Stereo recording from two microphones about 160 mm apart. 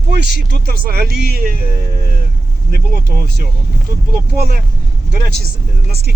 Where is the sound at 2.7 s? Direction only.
75° right (ahead or behind).